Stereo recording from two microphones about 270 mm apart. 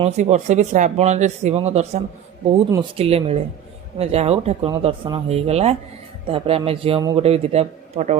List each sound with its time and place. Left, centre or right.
0.0 s a man's voice: right